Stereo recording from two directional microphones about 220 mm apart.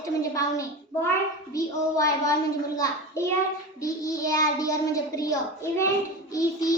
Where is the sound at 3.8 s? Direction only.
15° left (ahead or behind).